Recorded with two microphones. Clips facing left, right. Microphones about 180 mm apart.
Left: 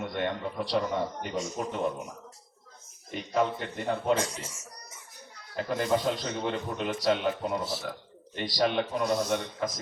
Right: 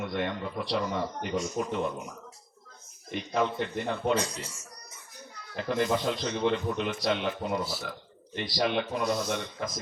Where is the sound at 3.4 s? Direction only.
40° left (ahead or behind).